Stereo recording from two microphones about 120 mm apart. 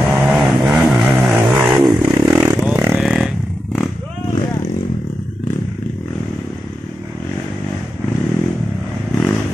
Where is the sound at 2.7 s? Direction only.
15° right (ahead or behind).